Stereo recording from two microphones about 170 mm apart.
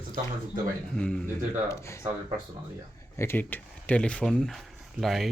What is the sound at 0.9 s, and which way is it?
Speech, 5° left (ahead or behind).